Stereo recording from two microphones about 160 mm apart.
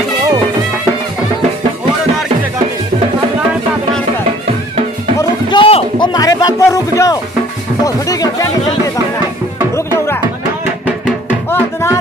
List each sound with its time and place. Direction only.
5.5 s a sound: 35° left (ahead or behind)
6.1 s music: 25° left (ahead or behind)
11.5 s music: 15° left (ahead or behind)